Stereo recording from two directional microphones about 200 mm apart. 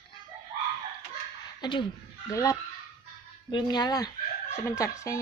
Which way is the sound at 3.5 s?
20° left (ahead or behind).